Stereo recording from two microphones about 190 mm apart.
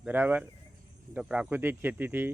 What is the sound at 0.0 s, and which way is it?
Speech, 10° right (ahead or behind).